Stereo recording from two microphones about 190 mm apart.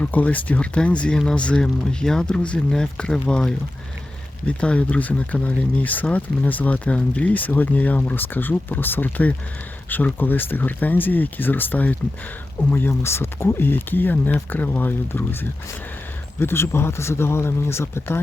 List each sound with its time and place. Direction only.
0.0 s speech: 10° left (ahead or behind)